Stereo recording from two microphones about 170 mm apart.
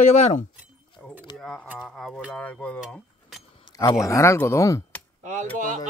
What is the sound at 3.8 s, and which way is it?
Speech, 20° left (ahead or behind).